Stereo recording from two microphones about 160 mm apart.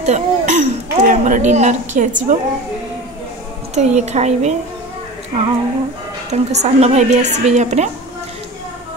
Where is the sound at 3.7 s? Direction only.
45° right (ahead or behind).